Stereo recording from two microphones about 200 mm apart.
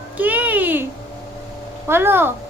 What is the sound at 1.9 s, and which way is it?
Speech, 10° right (ahead or behind).